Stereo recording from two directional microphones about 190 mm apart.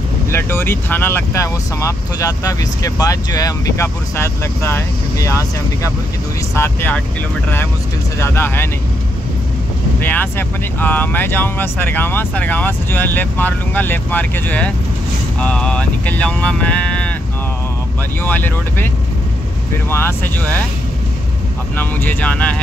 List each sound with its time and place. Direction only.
0.3 s speech: 10° left (ahead or behind)
8.2 s speech: 10° left (ahead or behind)
9.9 s speech: 10° left (ahead or behind)
18.2 s speech: 10° left (ahead or behind)
19.9 s speech: 10° left (ahead or behind)
21.7 s speech: 10° left (ahead or behind)